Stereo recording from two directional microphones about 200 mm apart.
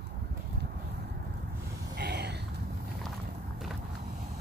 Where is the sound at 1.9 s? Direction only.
55° right (ahead or behind).